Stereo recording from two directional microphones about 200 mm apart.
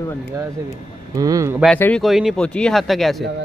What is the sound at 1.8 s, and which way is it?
Speech, 5° left (ahead or behind).